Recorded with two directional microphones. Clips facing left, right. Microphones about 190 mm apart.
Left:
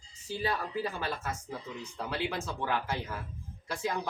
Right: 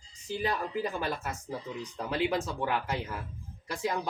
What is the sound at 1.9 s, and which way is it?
Speech, 15° right (ahead or behind).